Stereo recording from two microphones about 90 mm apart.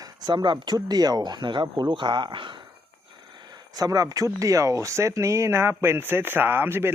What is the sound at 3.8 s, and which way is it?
Speech, 45° right (ahead or behind).